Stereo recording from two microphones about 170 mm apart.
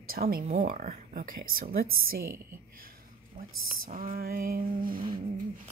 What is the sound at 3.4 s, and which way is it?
A woman's voice, 55° right (ahead or behind).